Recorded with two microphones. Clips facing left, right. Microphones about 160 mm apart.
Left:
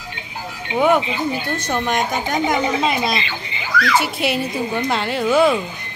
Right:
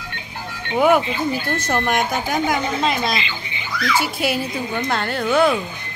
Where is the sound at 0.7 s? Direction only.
5° right (ahead or behind).